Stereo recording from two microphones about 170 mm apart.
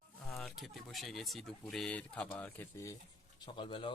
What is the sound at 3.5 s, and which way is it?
Speech, 30° left (ahead or behind).